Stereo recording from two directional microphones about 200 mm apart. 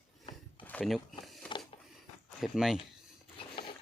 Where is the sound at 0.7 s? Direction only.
5° left (ahead or behind).